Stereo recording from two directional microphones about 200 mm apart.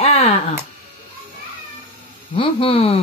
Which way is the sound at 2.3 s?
30° left (ahead or behind).